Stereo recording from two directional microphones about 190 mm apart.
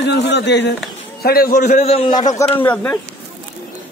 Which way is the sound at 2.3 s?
10° left (ahead or behind).